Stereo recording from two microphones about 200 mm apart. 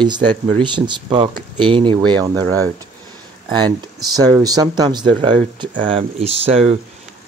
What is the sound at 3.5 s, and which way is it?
Speech, 20° right (ahead or behind).